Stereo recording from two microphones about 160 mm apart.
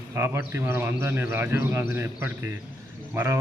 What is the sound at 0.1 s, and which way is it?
Speech, 15° right (ahead or behind).